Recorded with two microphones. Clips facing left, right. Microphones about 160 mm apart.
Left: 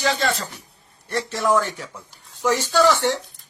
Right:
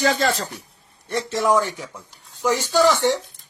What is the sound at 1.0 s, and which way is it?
A man's voice, 20° right (ahead or behind).